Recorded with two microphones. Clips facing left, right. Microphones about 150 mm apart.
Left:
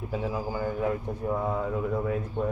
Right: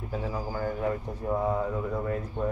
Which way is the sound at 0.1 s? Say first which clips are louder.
Left 2 dB; 5° left (ahead or behind).